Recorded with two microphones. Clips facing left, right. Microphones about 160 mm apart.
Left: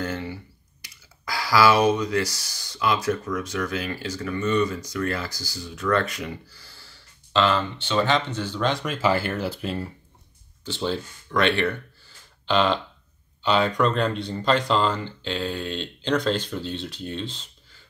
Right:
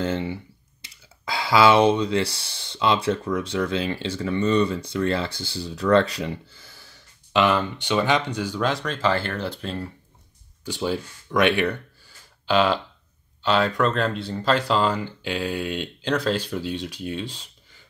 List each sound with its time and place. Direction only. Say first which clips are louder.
0.0 s clicking: right 4 dB; 25° right (ahead or behind)
0.8 s speech: right 2 dB; 25° right (ahead or behind); by 8.8 s 5° right (ahead or behind)
8.8 s speech: left 1 dB; 10° left (ahead or behind)
10.6 s speech: right 1 dB; 10° right (ahead or behind)